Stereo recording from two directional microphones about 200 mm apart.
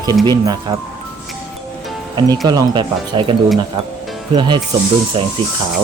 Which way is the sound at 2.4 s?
20° right (ahead or behind).